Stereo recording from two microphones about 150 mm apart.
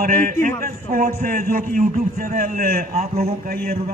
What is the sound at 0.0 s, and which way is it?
A man's voice, 65° right (ahead or behind).